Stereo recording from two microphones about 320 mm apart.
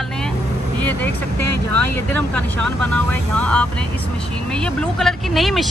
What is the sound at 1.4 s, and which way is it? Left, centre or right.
Speech, right.